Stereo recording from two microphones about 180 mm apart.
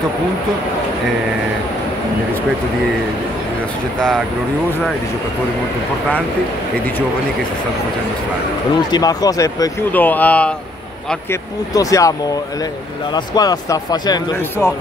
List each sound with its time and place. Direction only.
8.9 s speech: 20° left (ahead or behind)
9.9 s speech: 10° left (ahead or behind)
11.7 s speech: 20° left (ahead or behind)
13.1 s speech: 20° left (ahead or behind)